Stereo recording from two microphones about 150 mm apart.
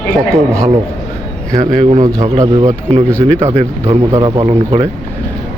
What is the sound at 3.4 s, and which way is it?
Speech, 45° right (ahead or behind).